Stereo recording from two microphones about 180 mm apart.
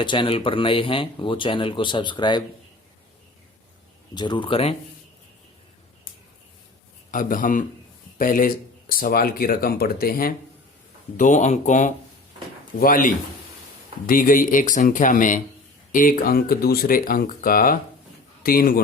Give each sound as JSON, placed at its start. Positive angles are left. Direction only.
{"t": 0.0, "sound": "speech", "side_deg": 25}
{"t": 4.1, "sound": "speech", "side_deg": 25}
{"t": 7.1, "sound": "speech", "side_deg": 50}
{"t": 11.2, "sound": "speech", "side_deg": 40}